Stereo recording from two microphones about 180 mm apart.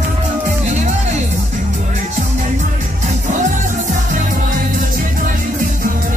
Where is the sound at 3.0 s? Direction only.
45° right (ahead or behind).